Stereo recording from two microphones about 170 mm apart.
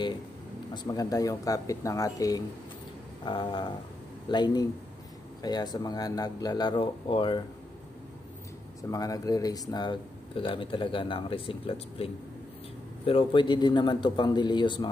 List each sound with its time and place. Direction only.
0.8 s speech: 20° left (ahead or behind)
8.9 s speech: 20° left (ahead or behind)